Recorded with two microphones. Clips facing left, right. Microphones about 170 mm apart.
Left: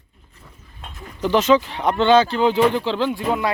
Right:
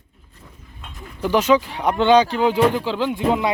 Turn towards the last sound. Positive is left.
turn(degrees=-20)  # may be behind; listen again after turning